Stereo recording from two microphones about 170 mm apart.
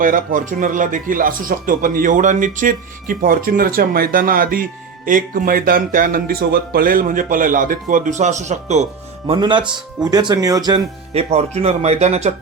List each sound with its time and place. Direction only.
0.0 s speech: 50° right (ahead or behind); by 10.8 s 25° right (ahead or behind)
11.1 s speech: 35° right (ahead or behind)